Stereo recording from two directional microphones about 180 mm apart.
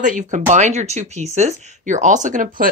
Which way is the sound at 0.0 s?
45° right (ahead or behind).